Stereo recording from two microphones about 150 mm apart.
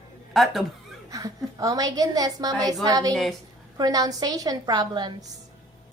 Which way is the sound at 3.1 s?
Centre (ahead or behind).